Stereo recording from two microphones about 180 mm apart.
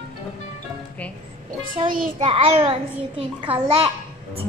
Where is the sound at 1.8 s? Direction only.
35° right (ahead or behind).